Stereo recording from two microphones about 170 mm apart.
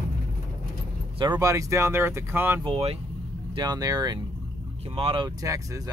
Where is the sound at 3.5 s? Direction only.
25° right (ahead or behind).